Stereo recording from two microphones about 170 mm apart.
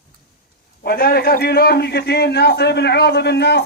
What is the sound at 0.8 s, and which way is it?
A man's voice, 60° left (ahead or behind).